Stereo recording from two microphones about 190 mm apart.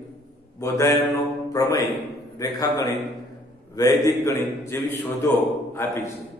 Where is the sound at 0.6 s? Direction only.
15° left (ahead or behind).